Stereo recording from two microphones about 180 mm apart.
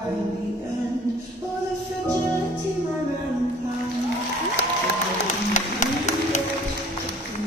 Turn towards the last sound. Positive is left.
turn(degrees=40)  # may be behind; listen again after turning